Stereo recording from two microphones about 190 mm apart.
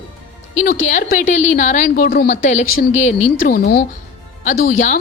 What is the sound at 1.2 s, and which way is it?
A woman's voice, 40° left (ahead or behind).